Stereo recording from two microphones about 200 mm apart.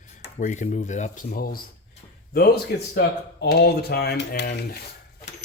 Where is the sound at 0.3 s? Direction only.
40° left (ahead or behind).